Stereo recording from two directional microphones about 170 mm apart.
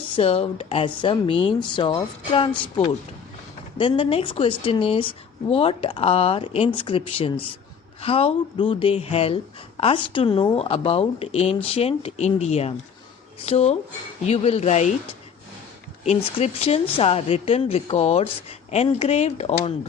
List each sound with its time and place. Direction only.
0.2 s speech: 35° left (ahead or behind)
16.0 s speech: 40° left (ahead or behind)